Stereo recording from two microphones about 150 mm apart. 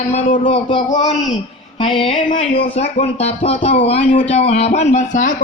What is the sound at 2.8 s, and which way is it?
Speech, 45° left (ahead or behind).